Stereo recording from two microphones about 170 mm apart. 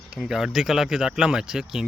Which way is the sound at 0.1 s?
Centre (ahead or behind).